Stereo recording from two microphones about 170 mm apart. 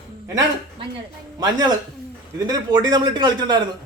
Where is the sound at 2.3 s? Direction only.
20° right (ahead or behind).